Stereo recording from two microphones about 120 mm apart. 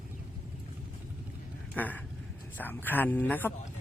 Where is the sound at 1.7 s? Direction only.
15° left (ahead or behind).